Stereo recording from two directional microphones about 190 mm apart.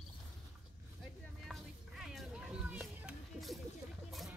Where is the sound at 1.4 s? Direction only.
Centre (ahead or behind).